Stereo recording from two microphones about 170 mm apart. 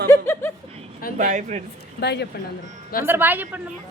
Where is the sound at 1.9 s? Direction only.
80° left.